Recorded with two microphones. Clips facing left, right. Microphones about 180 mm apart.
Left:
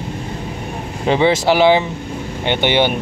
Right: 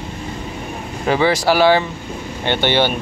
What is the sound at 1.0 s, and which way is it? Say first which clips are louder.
Speech: left 2 dB; 20° left (ahead or behind).